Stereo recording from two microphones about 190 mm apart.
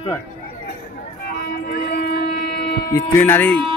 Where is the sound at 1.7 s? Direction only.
55° left (ahead or behind).